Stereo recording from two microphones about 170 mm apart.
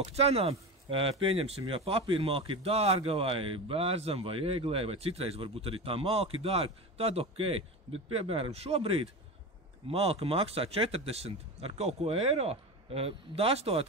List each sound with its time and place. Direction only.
0.0 s speech: 35° right (ahead or behind)